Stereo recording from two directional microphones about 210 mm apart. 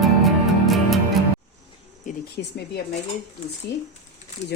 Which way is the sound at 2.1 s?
40° left (ahead or behind).